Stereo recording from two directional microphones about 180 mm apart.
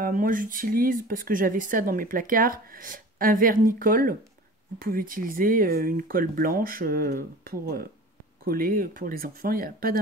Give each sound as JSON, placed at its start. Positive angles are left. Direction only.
{"t": 0.0, "sound": "speech", "side_deg": -50}